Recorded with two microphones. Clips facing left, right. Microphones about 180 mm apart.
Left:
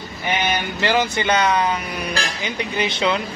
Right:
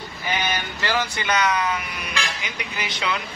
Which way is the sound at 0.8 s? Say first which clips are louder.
Left 5 dB; 20° left (ahead or behind).